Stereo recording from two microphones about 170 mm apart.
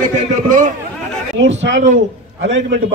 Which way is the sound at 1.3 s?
90° right.